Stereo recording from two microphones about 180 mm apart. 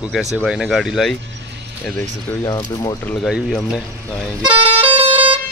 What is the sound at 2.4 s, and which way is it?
Speech, 20° left (ahead or behind).